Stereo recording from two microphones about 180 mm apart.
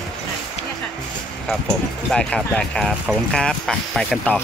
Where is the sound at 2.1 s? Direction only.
5° left (ahead or behind).